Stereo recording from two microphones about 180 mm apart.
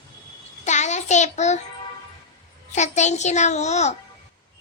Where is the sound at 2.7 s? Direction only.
40° left (ahead or behind).